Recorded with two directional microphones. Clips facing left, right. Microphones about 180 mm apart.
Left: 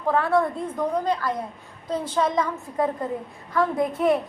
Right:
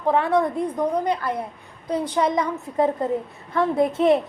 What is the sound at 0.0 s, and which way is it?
A woman's voice, 20° right (ahead or behind).